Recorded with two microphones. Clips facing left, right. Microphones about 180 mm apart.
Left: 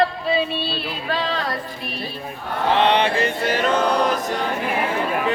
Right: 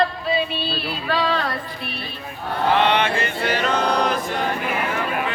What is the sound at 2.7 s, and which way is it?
Chant, 30° left (ahead or behind).